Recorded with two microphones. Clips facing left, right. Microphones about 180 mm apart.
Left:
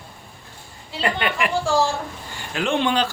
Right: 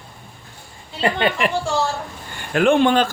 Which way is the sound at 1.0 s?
30° right (ahead or behind).